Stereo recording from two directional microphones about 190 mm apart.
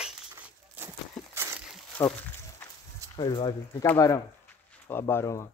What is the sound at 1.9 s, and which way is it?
Speech, 10° left (ahead or behind).